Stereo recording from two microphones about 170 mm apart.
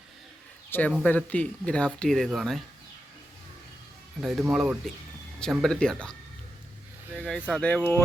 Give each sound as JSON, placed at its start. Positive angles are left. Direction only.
{"t": 0.7, "sound": "speech", "side_deg": 10}
{"t": 4.2, "sound": "speech", "side_deg": 0}
{"t": 5.4, "sound": "speech", "side_deg": 5}
{"t": 7.2, "sound": "speech", "side_deg": 10}